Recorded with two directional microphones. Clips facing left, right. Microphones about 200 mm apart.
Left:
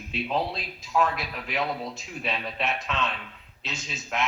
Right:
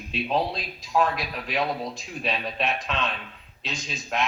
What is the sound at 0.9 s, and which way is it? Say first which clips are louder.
A man's voice: right 2 dB; 30° right (ahead or behind).